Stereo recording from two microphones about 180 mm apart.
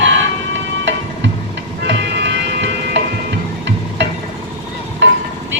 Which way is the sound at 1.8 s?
75° right (ahead or behind).